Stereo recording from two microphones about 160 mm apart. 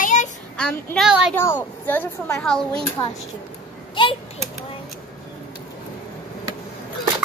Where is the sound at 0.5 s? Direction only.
5° left (ahead or behind).